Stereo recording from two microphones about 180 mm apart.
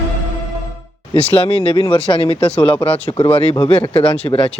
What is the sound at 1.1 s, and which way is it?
Speech, 30° left (ahead or behind).